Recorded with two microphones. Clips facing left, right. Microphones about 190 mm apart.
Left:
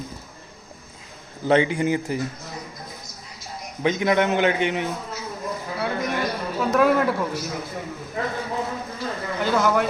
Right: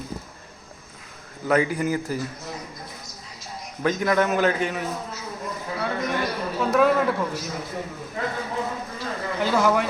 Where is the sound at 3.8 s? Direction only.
20° left (ahead or behind).